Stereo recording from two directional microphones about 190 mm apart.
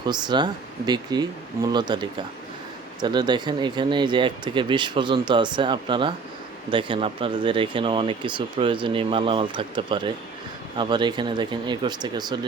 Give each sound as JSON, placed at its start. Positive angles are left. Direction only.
{"t": 0.0, "sound": "speech", "side_deg": -20}